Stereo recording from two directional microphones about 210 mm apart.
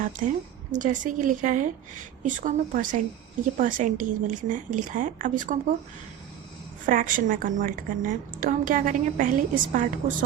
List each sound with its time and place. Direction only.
0.7 s a woman's voice: 35° right (ahead or behind)
6.8 s a woman's voice: 40° right (ahead or behind)